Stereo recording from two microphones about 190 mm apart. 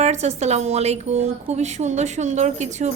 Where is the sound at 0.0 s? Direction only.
35° right (ahead or behind).